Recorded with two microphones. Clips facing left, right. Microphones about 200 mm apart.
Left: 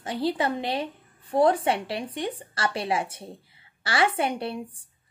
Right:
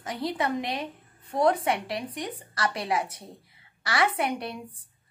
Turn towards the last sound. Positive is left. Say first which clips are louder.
# left 2 dB
turn(degrees=30)  # may be behind; listen again after turning